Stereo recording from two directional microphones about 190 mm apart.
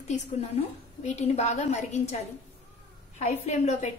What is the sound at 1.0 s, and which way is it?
A woman's voice, 35° left (ahead or behind).